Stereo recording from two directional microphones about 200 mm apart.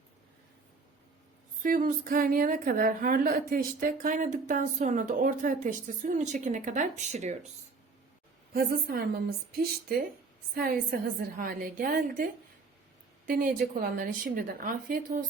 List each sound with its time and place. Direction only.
1.6 s a woman's voice: 45° right (ahead or behind)
8.5 s a woman's voice: 50° right (ahead or behind)